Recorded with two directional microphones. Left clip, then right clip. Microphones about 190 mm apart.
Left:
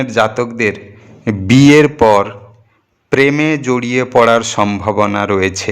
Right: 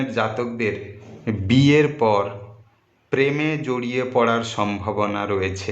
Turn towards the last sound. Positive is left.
turn(degrees=35)  # may be behind; listen again after turning